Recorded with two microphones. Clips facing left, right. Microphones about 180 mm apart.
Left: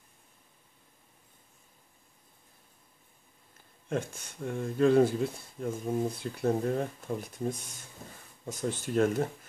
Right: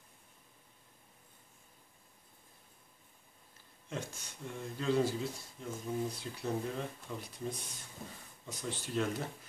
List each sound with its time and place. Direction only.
3.9 s speech: 50° left (ahead or behind)